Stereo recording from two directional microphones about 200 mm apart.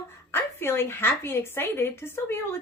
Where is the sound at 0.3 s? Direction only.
10° left (ahead or behind).